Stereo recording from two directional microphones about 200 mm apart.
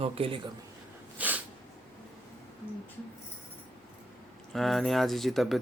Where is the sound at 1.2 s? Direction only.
5° right (ahead or behind).